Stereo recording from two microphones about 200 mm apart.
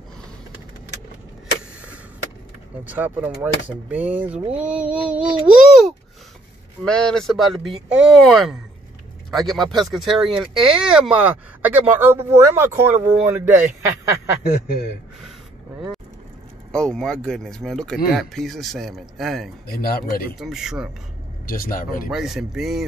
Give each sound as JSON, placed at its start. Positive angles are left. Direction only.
{"t": 2.8, "sound": "speech", "side_deg": -10}
{"t": 16.7, "sound": "speech", "side_deg": 5}
{"t": 19.7, "sound": "speech", "side_deg": 50}
{"t": 20.3, "sound": "speech", "side_deg": 0}
{"t": 21.5, "sound": "speech", "side_deg": 45}
{"t": 22.1, "sound": "speech", "side_deg": 0}